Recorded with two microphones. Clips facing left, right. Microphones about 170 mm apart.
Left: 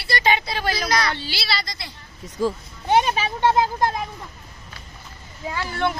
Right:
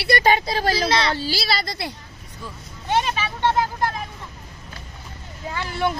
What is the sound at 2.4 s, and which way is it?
Speech, 90° left.